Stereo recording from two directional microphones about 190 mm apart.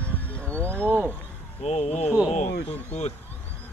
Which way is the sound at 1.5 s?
35° left (ahead or behind).